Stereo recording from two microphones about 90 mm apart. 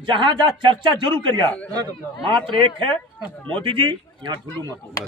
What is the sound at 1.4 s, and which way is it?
Speech, 15° left (ahead or behind).